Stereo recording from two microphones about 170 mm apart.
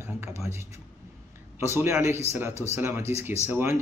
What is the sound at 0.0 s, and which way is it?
A man's voice, 15° right (ahead or behind).